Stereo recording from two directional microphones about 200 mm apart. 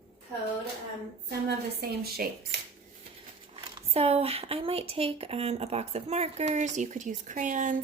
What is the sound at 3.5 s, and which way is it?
Speech, 30° right (ahead or behind).